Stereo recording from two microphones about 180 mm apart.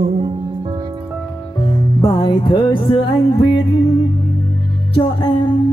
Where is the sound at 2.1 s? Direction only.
30° left (ahead or behind).